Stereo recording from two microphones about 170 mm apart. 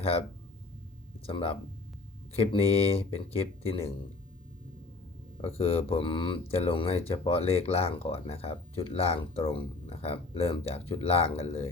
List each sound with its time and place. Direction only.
0.0 s speech: 35° left (ahead or behind)
1.3 s speech: 30° left (ahead or behind)
5.4 s speech: 35° left (ahead or behind)